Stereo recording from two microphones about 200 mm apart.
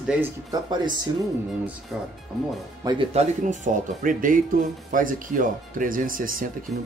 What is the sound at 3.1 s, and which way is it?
Speech, 35° right (ahead or behind).